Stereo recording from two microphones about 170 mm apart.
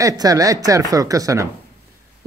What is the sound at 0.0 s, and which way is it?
Speech, 20° right (ahead or behind).